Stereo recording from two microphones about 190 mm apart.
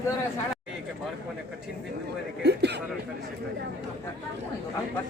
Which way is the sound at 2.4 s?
60° right (ahead or behind).